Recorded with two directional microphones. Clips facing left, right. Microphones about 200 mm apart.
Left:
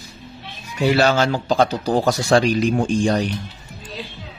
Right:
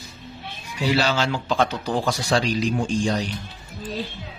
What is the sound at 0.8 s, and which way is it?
Speech, 50° left (ahead or behind).